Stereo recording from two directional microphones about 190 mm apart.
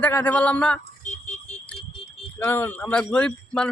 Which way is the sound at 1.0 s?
40° left (ahead or behind).